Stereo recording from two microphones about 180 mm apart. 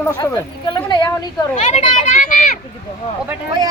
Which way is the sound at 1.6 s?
35° left (ahead or behind).